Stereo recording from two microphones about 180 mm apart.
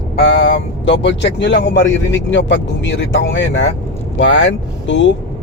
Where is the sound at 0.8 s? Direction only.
80° left.